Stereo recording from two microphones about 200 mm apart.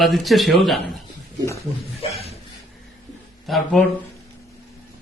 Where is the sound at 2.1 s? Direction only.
30° left (ahead or behind).